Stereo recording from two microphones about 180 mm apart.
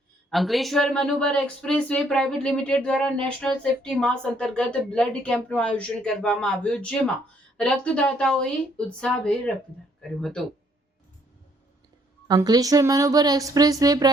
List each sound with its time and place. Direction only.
0.3 s speech: centre (ahead or behind)
12.3 s a woman's voice: 20° right (ahead or behind)